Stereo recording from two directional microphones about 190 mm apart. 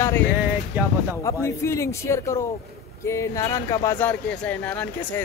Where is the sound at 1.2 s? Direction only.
15° left (ahead or behind).